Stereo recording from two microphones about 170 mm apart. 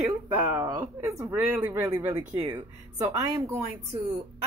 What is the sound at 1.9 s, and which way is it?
Speech, 25° right (ahead or behind).